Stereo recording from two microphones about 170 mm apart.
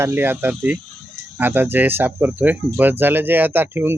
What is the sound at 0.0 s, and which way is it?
Speech, 10° right (ahead or behind).